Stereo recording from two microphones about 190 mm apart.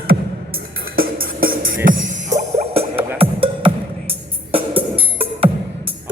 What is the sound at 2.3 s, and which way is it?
Music, 35° right (ahead or behind).